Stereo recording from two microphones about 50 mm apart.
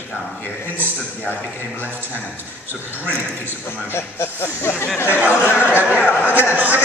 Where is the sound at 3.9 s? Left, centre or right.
Left.